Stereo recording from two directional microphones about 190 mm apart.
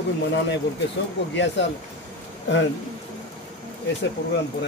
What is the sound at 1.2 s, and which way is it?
Speech, 65° left (ahead or behind).